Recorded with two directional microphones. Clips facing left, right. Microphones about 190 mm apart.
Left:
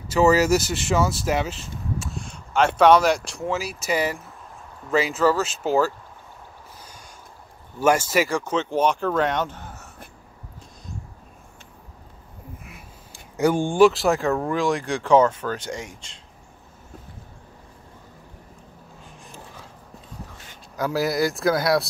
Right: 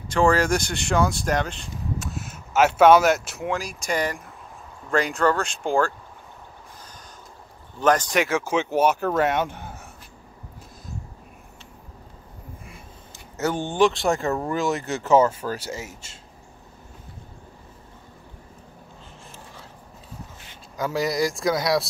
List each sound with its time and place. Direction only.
0.1 s speech: 5° left (ahead or behind)
7.8 s speech: 10° left (ahead or behind); by 9.8 s 10° right (ahead or behind)
12.6 s speech: 10° left (ahead or behind)
20.7 s speech: centre (ahead or behind)